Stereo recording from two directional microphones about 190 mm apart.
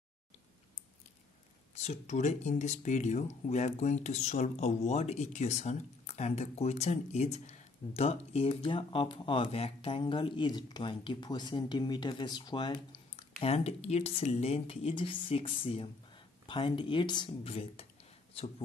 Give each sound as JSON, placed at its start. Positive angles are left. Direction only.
{"t": 1.8, "sound": "speech", "side_deg": 35}